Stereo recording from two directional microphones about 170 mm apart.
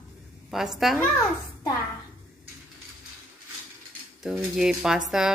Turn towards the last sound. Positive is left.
turn(degrees=-5)  # may be behind; listen again after turning